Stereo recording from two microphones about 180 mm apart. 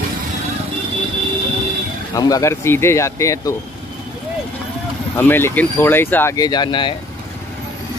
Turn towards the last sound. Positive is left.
turn(degrees=25)  # may be behind; listen again after turning